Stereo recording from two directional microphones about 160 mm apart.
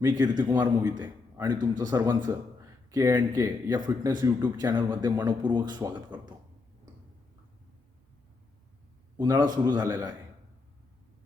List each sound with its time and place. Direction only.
0.0 s a man's voice: 25° right (ahead or behind)
9.1 s a man's voice: 25° right (ahead or behind)